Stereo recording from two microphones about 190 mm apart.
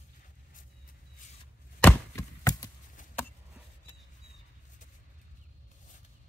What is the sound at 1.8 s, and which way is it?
Chopping, 15° left (ahead or behind).